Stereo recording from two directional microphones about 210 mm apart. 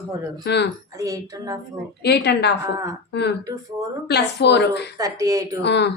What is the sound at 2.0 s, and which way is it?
A woman's voice, 50° left (ahead or behind).